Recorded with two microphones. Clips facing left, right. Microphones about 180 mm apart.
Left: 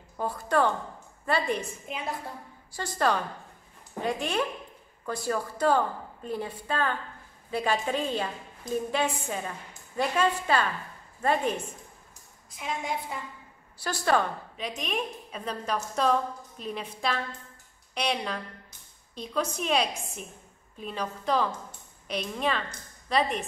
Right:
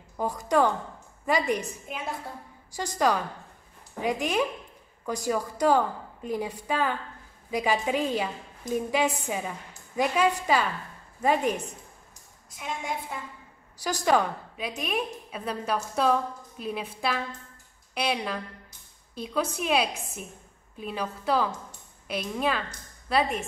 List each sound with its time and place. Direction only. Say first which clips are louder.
0.2 s a woman's voice: right 2 dB; 15° right (ahead or behind)
1.9 s a woman's voice: left 1 dB; centre (ahead or behind)
2.7 s a woman's voice: right 2 dB; 15° right (ahead or behind)
12.4 s a woman's voice: left 1 dB; centre (ahead or behind)
13.8 s a woman's voice: right 2 dB; 10° right (ahead or behind)